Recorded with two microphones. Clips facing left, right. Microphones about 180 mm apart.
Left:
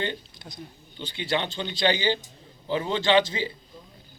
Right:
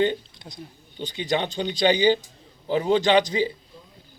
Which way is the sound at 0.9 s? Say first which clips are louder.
Right 3 dB; 20° right (ahead or behind).